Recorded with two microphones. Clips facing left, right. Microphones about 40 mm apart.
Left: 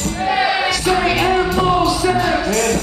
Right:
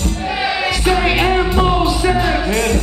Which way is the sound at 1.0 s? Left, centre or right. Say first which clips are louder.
Even; centre.